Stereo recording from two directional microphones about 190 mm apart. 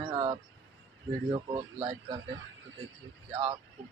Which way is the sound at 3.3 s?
25° right (ahead or behind).